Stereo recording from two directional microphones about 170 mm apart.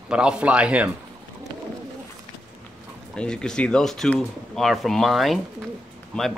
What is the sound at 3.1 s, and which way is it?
Speech, 5° left (ahead or behind).